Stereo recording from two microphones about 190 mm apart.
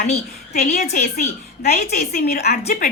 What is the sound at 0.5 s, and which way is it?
A woman's voice, 45° left (ahead or behind).